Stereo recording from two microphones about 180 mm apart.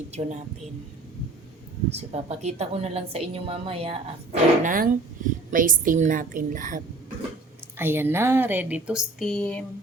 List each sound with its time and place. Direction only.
0.1 s a woman's voice: 40° right (ahead or behind)
2.0 s a woman's voice: 35° right (ahead or behind)
7.8 s speech: 10° right (ahead or behind); by 9.6 s 5° left (ahead or behind)